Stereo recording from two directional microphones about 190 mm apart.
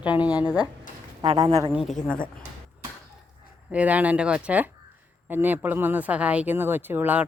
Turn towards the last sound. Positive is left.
turn(degrees=-10)  # may be behind; listen again after turning